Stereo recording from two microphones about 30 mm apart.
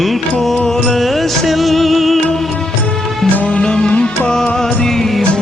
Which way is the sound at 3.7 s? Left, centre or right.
Left.